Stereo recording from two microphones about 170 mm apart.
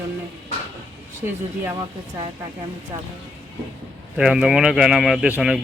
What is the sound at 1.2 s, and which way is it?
Speech, 10° right (ahead or behind).